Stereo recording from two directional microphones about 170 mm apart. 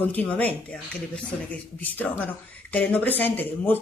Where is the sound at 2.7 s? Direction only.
10° left (ahead or behind).